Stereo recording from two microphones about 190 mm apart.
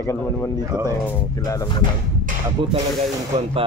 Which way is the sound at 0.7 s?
20° right (ahead or behind).